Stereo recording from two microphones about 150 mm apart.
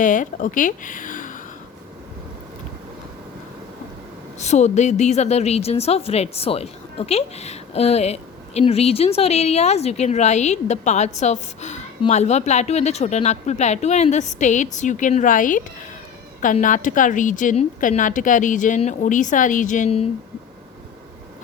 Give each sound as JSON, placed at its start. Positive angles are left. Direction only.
{"t": 0.0, "sound": "a woman's voice", "side_deg": 60}
{"t": 4.4, "sound": "a woman's voice", "side_deg": 50}